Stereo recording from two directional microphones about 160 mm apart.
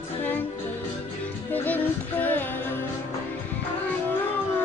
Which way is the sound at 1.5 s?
10° left (ahead or behind).